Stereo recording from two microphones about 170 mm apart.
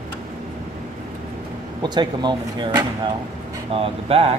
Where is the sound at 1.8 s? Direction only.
25° right (ahead or behind).